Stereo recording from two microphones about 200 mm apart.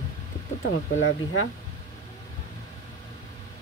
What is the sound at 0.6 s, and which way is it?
Speech, 75° left (ahead or behind).